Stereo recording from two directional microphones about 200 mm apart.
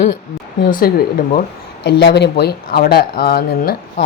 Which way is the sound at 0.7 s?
50° left (ahead or behind).